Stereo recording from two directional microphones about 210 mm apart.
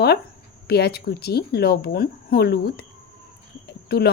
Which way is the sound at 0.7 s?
50° left (ahead or behind).